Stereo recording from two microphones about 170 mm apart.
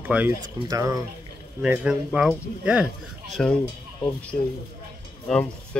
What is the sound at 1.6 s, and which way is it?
Speech, 5° right (ahead or behind).